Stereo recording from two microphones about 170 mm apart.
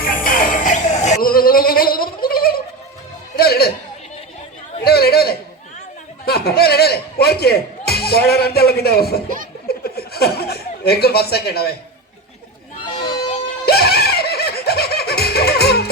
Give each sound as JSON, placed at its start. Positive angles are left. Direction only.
{"t": 0.0, "sound": "music", "side_deg": 55}
{"t": 1.3, "sound": "a sound", "side_deg": 60}
{"t": 3.3, "sound": "music", "side_deg": 65}
{"t": 4.8, "sound": "chatter", "side_deg": 65}
{"t": 6.2, "sound": "music", "side_deg": 65}
{"t": 9.6, "sound": "chuckle", "side_deg": 65}
{"t": 13.7, "sound": "music", "side_deg": 70}